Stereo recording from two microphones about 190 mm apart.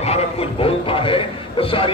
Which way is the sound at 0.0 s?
30° left (ahead or behind).